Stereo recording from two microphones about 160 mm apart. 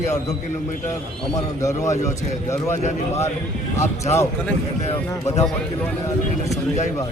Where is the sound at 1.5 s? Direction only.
20° left (ahead or behind).